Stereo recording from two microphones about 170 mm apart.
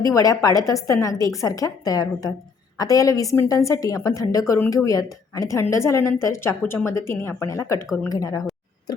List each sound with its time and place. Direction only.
0.0 s a woman's voice: 20° left (ahead or behind)